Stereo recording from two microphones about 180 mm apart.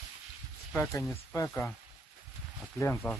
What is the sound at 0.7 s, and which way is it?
Speech, 10° left (ahead or behind).